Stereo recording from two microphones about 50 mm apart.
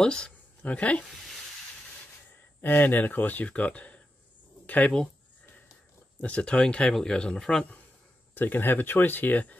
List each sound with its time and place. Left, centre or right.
0.0 s speech: centre
0.6 s speech: left
2.6 s speech: left
6.2 s speech: left
8.4 s speech: left